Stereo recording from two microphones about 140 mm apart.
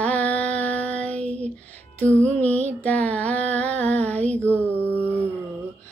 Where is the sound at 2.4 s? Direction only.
10° left (ahead or behind).